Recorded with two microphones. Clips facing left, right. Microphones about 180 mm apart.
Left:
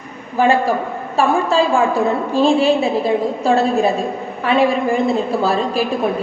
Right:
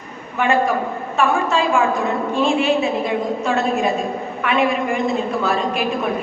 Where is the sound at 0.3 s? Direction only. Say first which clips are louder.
Left 3 dB; 35° left (ahead or behind).